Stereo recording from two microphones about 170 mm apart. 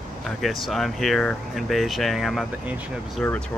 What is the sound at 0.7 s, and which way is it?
Speech, centre (ahead or behind).